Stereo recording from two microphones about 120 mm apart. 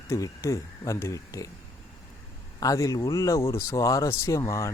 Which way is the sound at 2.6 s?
30° left (ahead or behind).